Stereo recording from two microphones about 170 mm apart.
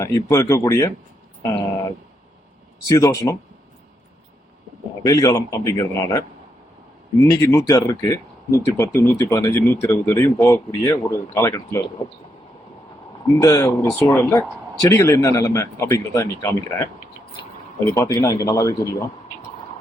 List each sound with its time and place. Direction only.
0.0 s speech: 20° left (ahead or behind)
2.9 s speech: 20° left (ahead or behind)
5.0 s speech: 20° left (ahead or behind)
13.2 s speech: 20° left (ahead or behind)
17.9 s speech: 20° left (ahead or behind)